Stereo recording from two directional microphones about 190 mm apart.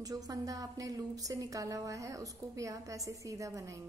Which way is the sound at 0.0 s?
20° right (ahead or behind).